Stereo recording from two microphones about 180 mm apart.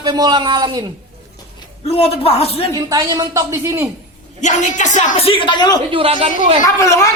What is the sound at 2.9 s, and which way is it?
A man's voice, 20° right (ahead or behind).